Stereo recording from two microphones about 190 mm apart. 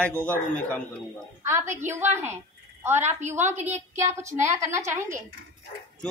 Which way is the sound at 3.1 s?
40° right (ahead or behind).